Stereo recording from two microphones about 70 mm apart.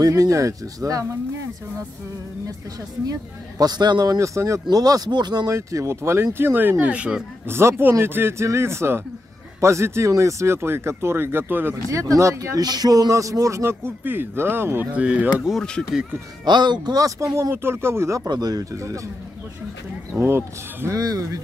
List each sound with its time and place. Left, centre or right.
0.0 s speech: right
3.1 s speech: right
4.2 s speech: right
4.6 s speech: right
5.5 s speech: right
6.9 s speech: centre
7.4 s speech: right
11.9 s speech: right
12.5 s speech: right
15.0 s speech: centre
16.4 s speech: right
18.3 s speech: right
20.2 s speech: right
20.9 s speech: right